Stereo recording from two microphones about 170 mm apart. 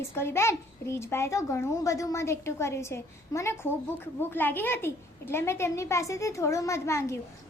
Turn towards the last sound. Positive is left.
turn(degrees=15)  # may be behind; listen again after turning